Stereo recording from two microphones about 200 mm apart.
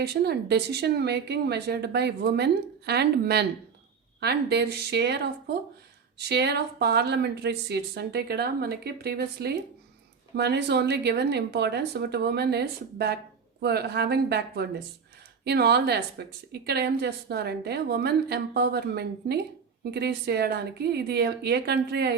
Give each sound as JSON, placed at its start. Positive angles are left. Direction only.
{"t": 0.0, "sound": "a woman's voice", "side_deg": -55}